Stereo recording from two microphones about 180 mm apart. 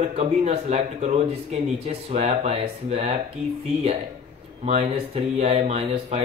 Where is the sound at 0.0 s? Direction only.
35° right (ahead or behind).